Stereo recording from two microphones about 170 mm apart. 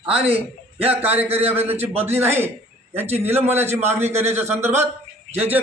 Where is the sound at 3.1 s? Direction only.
15° right (ahead or behind).